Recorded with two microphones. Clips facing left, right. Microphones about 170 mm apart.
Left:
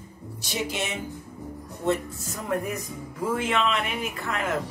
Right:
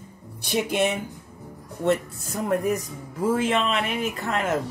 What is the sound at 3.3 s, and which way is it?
Speech, 35° right (ahead or behind).